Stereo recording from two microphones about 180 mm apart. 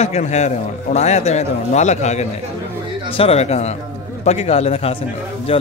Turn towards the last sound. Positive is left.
turn(degrees=30)  # may be behind; listen again after turning